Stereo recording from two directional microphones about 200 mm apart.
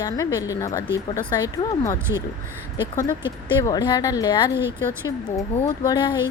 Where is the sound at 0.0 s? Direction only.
15° left (ahead or behind).